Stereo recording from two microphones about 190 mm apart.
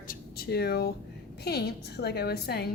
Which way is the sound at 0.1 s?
55° left (ahead or behind).